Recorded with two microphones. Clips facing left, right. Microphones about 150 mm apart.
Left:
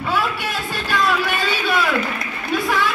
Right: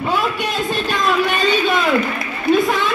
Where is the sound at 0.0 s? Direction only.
20° right (ahead or behind).